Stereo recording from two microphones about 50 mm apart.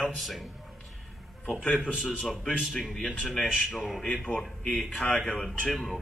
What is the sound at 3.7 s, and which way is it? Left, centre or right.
Speech, centre.